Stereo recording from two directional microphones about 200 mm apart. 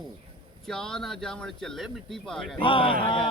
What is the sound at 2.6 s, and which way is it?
Speech, 25° left (ahead or behind).